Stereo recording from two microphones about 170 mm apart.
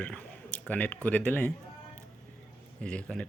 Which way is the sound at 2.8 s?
5° left (ahead or behind).